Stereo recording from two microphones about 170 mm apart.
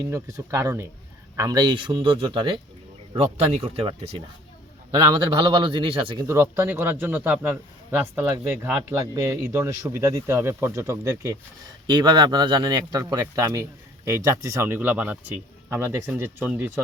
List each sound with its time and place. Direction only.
0.0 s a man's voice: 20° right (ahead or behind); by 3.9 s 35° right (ahead or behind)
5.0 s a man's voice: 25° right (ahead or behind)
6.2 s a man's voice: 15° right (ahead or behind)
9.1 s a man's voice: 20° right (ahead or behind)